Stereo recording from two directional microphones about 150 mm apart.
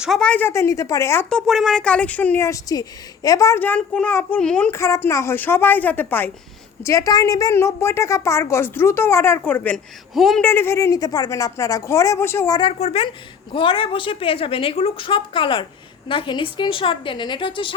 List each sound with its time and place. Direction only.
0.0 s a woman's voice: 5° left (ahead or behind)
1.3 s a woman's voice: 5° left (ahead or behind)
10.4 s speech: 15° left (ahead or behind)
12.5 s a woman's voice: 40° left (ahead or behind)